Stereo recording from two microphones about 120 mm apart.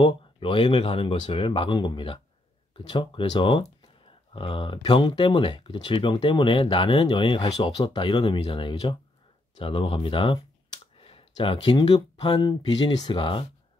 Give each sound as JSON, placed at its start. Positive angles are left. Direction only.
{"t": 0.0, "sound": "speech", "side_deg": 45}